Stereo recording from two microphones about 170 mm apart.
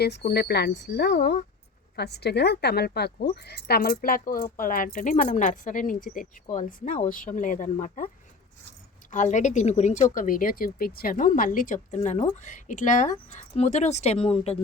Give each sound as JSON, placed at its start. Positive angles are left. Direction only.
{"t": 0.0, "sound": "speech", "side_deg": 75}
{"t": 2.0, "sound": "a woman's voice", "side_deg": 75}
{"t": 9.1, "sound": "speech", "side_deg": 45}